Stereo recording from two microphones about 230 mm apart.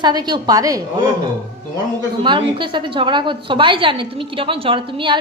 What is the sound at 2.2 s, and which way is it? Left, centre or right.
A woman's voice, right.